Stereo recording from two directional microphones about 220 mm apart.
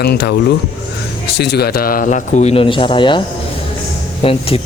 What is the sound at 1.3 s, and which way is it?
Speech, 50° left (ahead or behind).